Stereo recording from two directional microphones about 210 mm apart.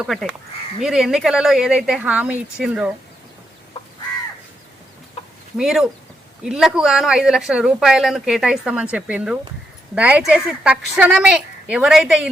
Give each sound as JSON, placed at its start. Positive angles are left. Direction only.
{"t": 0.0, "sound": "speech", "side_deg": 0}
{"t": 5.5, "sound": "speech", "side_deg": 0}